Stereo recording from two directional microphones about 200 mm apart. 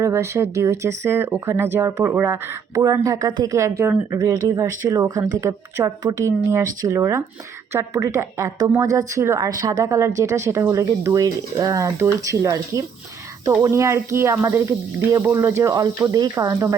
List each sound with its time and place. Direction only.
0.0 s speech: 15° right (ahead or behind)